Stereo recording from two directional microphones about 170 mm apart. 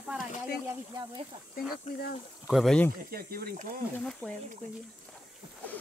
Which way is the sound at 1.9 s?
40° left (ahead or behind).